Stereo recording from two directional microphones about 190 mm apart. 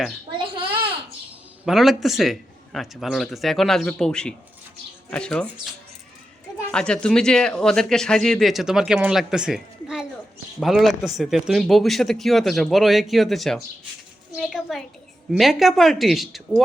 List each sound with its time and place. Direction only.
0.3 s a sound: 25° right (ahead or behind)
1.6 s speech: centre (ahead or behind)
6.7 s a child's voice: 5° left (ahead or behind)